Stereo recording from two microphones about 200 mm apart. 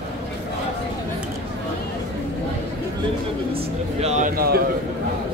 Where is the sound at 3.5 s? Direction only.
30° right (ahead or behind); by 4.6 s 50° right (ahead or behind).